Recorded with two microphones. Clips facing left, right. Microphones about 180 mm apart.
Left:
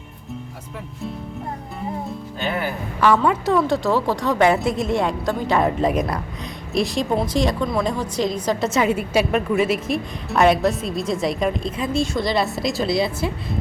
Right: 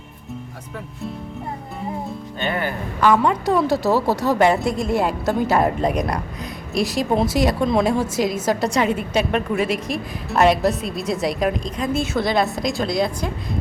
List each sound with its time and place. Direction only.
2.0 s a woman's voice: centre (ahead or behind)
7.6 s a woman's voice: 20° right (ahead or behind)
8.1 s a woman's voice: 5° right (ahead or behind)